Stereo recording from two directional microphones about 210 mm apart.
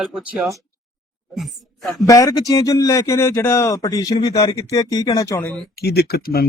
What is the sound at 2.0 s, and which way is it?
Speech, 15° left (ahead or behind).